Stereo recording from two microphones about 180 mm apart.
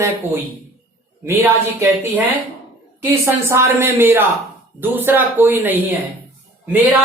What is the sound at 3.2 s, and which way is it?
Speech, 15° right (ahead or behind).